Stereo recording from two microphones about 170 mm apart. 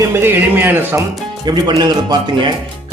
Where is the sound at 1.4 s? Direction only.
25° right (ahead or behind).